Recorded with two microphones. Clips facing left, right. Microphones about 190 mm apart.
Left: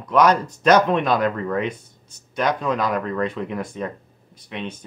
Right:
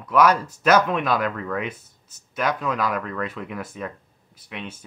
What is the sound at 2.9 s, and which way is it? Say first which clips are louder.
Speech: left 5 dB; 35° left (ahead or behind).